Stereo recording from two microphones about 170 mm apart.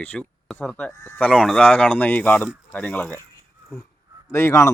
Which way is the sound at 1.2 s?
5° left (ahead or behind).